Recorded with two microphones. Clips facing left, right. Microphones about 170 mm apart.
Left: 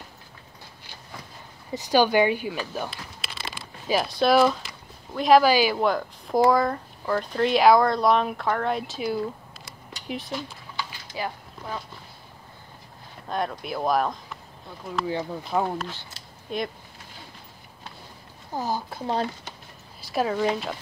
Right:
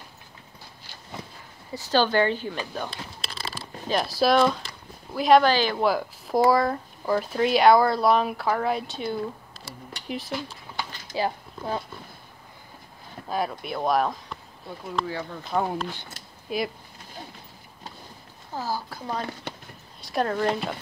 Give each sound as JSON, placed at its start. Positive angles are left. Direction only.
{"t": 1.7, "sound": "speech", "side_deg": 15}
{"t": 3.3, "sound": "a sound", "side_deg": -35}
{"t": 3.9, "sound": "speech", "side_deg": 0}
{"t": 5.9, "sound": "speech", "side_deg": -5}
{"t": 11.1, "sound": "speech", "side_deg": -30}
{"t": 13.3, "sound": "speech", "side_deg": -5}
{"t": 15.5, "sound": "speech", "side_deg": 5}
{"t": 18.5, "sound": "a woman's voice", "side_deg": 20}
{"t": 19.5, "sound": "a sound", "side_deg": -60}
{"t": 20.0, "sound": "speech", "side_deg": 5}